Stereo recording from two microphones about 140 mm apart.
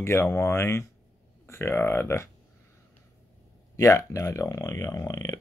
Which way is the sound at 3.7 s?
25° left (ahead or behind).